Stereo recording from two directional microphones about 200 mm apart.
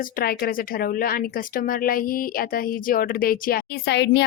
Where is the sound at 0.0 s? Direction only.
45° left (ahead or behind).